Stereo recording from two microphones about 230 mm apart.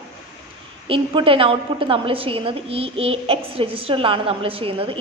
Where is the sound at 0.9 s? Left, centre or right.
Right.